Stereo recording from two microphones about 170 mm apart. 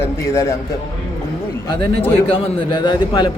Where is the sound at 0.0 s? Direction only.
15° left (ahead or behind).